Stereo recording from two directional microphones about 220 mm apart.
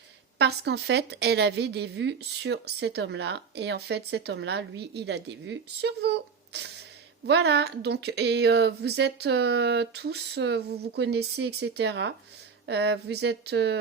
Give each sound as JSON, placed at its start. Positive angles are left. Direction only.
{"t": 0.3, "sound": "a woman's voice", "side_deg": -50}